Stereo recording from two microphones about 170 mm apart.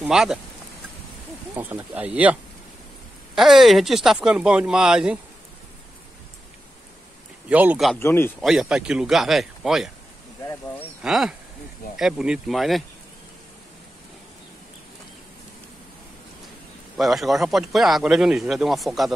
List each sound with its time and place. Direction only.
0.0 s speech: 5° right (ahead or behind)
1.5 s speech: 10° right (ahead or behind)
3.3 s speech: centre (ahead or behind)
7.4 s speech: 10° right (ahead or behind)
8.0 s speech: 15° left (ahead or behind)
8.4 s speech: centre (ahead or behind)
10.4 s speech: 15° left (ahead or behind)
11.0 s speech: centre (ahead or behind)
16.9 s speech: centre (ahead or behind)